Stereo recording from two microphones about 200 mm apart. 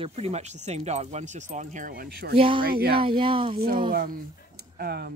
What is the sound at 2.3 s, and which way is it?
Speech, 25° right (ahead or behind).